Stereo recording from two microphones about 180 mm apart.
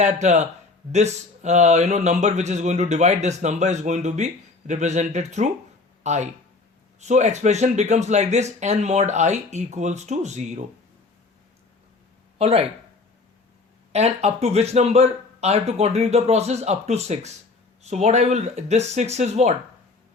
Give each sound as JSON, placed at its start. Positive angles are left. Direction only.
{"t": 0.0, "sound": "speech", "side_deg": -40}
{"t": 12.4, "sound": "speech", "side_deg": -35}
{"t": 13.9, "sound": "speech", "side_deg": -35}